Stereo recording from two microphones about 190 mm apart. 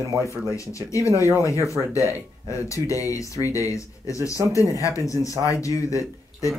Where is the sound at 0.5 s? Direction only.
15° left (ahead or behind).